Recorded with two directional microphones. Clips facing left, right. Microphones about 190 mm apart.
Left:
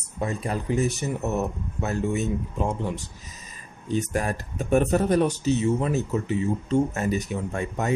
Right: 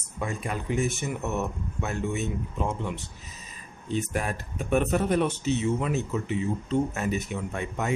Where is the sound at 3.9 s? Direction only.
45° left (ahead or behind).